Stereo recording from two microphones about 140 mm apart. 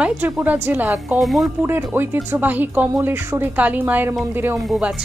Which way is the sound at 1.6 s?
15° right (ahead or behind).